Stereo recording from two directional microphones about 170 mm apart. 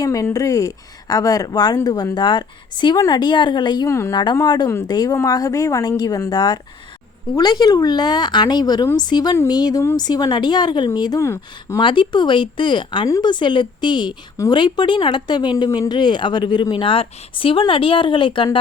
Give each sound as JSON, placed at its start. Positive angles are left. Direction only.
{"t": 0.0, "sound": "speech", "side_deg": 20}
{"t": 11.8, "sound": "speech", "side_deg": 30}